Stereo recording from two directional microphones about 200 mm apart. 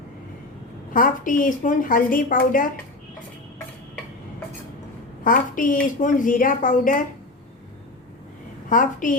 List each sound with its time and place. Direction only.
0.9 s a woman's voice: 40° left (ahead or behind)
5.2 s a woman's voice: 45° left (ahead or behind)
8.7 s speech: 40° left (ahead or behind)